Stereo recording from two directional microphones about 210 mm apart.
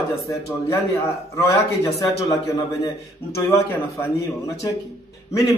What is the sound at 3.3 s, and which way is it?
A man's voice, 15° left (ahead or behind).